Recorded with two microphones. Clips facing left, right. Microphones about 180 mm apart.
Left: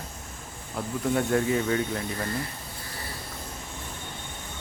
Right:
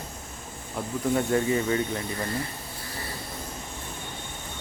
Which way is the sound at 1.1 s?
Centre (ahead or behind).